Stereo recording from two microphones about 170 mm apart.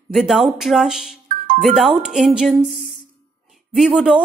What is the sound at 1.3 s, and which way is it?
Music, 50° right (ahead or behind).